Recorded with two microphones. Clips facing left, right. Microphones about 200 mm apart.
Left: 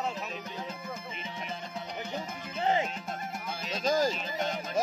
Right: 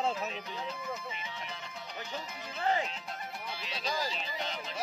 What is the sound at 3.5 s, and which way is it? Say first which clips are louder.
Music: left 9 dB; 45° left (ahead or behind).